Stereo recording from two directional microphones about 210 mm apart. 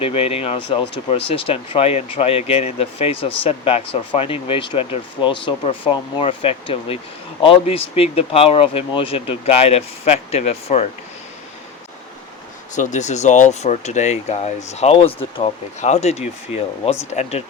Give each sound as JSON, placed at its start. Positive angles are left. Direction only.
{"t": 0.0, "sound": "speech", "side_deg": 25}
{"t": 12.7, "sound": "speech", "side_deg": 35}